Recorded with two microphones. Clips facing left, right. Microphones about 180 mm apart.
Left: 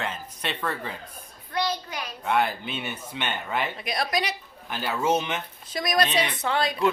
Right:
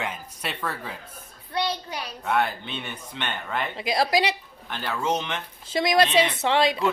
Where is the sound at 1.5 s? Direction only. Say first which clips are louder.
Even; 30° right (ahead or behind).